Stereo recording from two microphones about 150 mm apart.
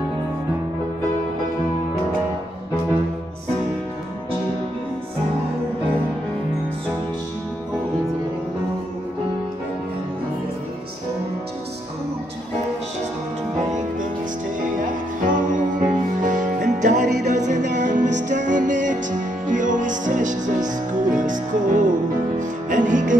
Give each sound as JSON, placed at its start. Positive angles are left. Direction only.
{"t": 14.8, "sound": "music", "side_deg": -60}
{"t": 17.0, "sound": "music", "side_deg": -90}
{"t": 17.3, "sound": "music", "side_deg": -55}